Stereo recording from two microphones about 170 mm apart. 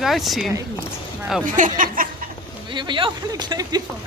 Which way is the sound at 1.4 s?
50° right (ahead or behind).